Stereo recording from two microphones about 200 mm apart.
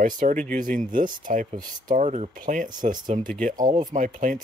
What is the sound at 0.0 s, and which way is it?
Speech, 40° right (ahead or behind).